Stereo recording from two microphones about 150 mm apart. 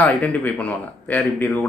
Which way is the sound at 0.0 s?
10° left (ahead or behind).